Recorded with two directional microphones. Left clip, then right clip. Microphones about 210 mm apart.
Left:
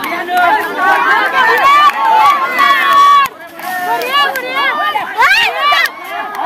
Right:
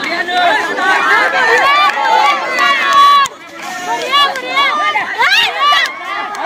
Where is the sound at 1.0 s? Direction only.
50° left (ahead or behind).